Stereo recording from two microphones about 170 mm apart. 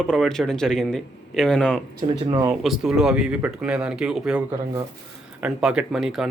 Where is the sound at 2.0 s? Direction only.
35° right (ahead or behind).